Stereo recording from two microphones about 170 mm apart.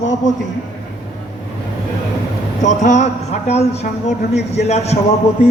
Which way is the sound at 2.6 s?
45° left (ahead or behind).